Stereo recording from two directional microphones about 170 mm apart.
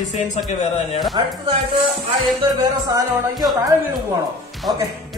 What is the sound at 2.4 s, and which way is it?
Music, 25° right (ahead or behind).